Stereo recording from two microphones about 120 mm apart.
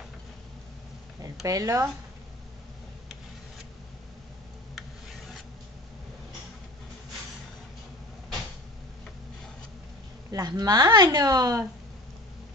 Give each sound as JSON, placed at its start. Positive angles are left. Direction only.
{"t": 1.4, "sound": "speech", "side_deg": -25}
{"t": 10.3, "sound": "speech", "side_deg": -30}